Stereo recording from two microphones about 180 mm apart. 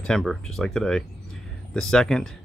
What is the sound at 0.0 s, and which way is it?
Speech, 5° left (ahead or behind).